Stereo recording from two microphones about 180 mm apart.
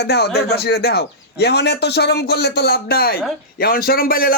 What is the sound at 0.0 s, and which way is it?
A man's voice, 65° left (ahead or behind).